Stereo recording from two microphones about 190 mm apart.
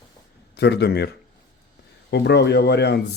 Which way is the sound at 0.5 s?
60° left (ahead or behind).